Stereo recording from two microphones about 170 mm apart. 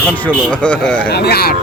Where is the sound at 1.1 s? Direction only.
70° left (ahead or behind).